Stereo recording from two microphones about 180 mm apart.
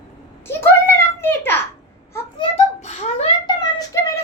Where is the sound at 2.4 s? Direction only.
35° left (ahead or behind).